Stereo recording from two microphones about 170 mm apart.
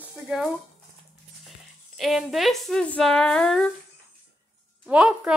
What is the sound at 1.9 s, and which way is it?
A woman's voice, centre (ahead or behind).